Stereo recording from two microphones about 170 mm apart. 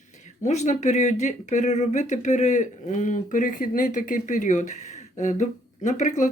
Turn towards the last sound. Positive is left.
turn(degrees=45)  # may be behind; listen again after turning